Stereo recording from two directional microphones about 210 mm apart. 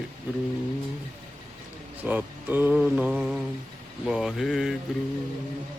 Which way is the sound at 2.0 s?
10° right (ahead or behind).